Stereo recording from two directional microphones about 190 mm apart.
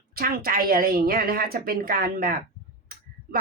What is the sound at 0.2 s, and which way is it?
Speech, 50° right (ahead or behind).